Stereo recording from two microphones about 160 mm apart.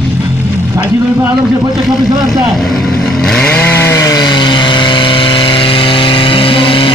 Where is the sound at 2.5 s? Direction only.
Centre (ahead or behind).